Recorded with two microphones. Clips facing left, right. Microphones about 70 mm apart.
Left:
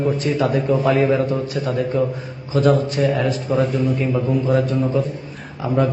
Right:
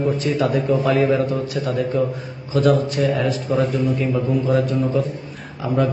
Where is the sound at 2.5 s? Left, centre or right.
Left.